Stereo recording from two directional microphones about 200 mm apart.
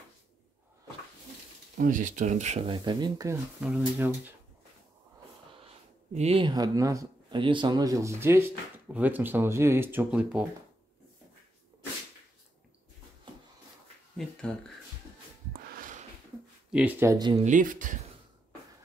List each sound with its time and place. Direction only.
1.8 s speech: 40° right (ahead or behind); by 3.3 s 20° right (ahead or behind)
3.6 s speech: 5° right (ahead or behind)
6.1 s speech: 30° right (ahead or behind); by 10.4 s 10° right (ahead or behind)
14.1 s speech: 5° left (ahead or behind)
15.5 s a sound: 45° right (ahead or behind)
16.7 s speech: 10° right (ahead or behind)
17.5 s speech: 40° right (ahead or behind)